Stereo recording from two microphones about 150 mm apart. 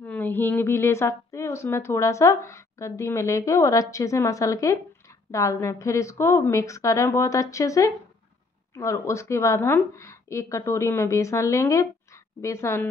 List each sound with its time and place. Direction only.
0.0 s a woman's voice: 10° left (ahead or behind)